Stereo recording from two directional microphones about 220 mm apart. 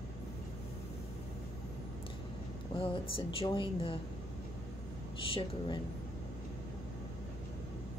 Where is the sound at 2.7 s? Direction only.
25° left (ahead or behind).